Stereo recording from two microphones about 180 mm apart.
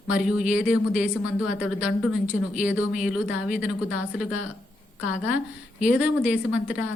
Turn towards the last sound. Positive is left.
turn(degrees=-5)  # may be behind; listen again after turning